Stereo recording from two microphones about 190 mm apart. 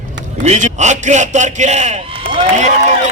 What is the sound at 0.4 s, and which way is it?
A man's voice, 35° right (ahead or behind).